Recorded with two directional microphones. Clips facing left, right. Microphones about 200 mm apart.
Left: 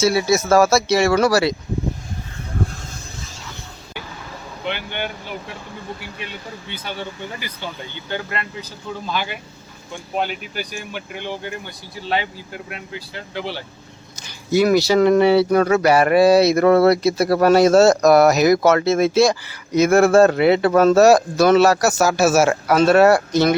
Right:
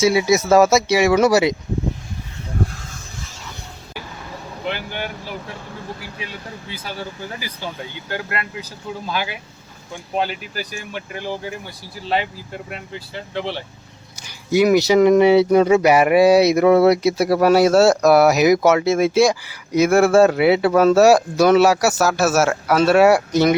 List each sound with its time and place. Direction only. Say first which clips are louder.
0.0 s speech: right 1 dB; 15° right (ahead or behind)
4.6 s speech: even; centre (ahead or behind)
6.7 s speech: left 1 dB; 5° right (ahead or behind)
14.2 s speech: right 1 dB; 15° right (ahead or behind)